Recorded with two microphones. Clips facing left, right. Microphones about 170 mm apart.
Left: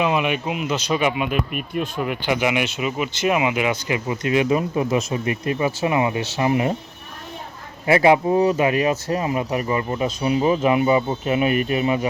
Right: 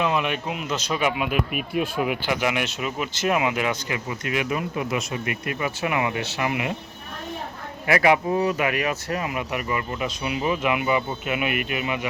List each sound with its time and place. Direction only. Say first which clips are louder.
0.0 s speech: left 3 dB; 5° left (ahead or behind)
3.8 s speech: left 6 dB; 20° left (ahead or behind)
7.9 s speech: left 4 dB; 25° left (ahead or behind)